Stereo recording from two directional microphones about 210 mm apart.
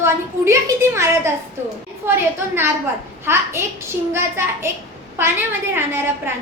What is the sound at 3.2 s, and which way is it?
A woman's voice, 10° right (ahead or behind).